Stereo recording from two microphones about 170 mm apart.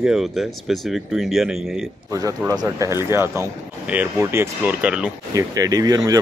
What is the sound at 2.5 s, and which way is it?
Speech, 20° right (ahead or behind).